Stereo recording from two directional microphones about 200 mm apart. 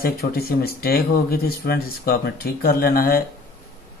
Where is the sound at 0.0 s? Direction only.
50° left (ahead or behind).